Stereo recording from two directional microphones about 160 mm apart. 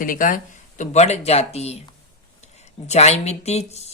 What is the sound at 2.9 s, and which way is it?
Speech, 45° left (ahead or behind).